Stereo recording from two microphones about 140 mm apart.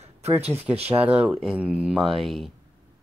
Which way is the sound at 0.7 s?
45° right (ahead or behind).